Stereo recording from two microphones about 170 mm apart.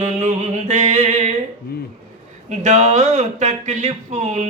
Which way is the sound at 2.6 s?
40° right (ahead or behind).